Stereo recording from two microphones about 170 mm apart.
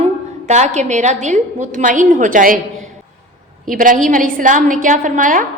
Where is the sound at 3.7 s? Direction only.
50° right (ahead or behind).